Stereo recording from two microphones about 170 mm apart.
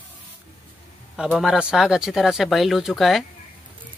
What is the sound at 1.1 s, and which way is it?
Speech, 5° right (ahead or behind).